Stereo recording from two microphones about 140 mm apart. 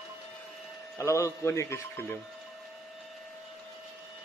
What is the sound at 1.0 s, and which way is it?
Speech, 20° left (ahead or behind).